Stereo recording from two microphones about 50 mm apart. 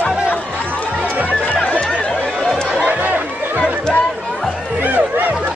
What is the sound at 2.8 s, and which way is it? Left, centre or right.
Chatter, right.